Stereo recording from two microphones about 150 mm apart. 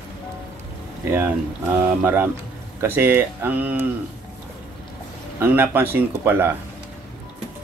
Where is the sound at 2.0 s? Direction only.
15° right (ahead or behind).